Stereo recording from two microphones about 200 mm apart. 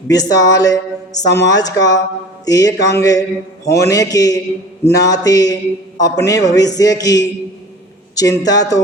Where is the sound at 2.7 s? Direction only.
55° left (ahead or behind).